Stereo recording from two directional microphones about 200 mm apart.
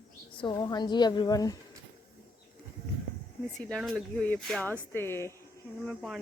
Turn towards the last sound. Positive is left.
turn(degrees=0)  # may be behind; listen again after turning